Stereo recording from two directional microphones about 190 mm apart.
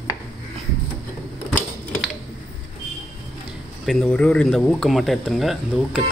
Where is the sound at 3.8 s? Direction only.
5° left (ahead or behind).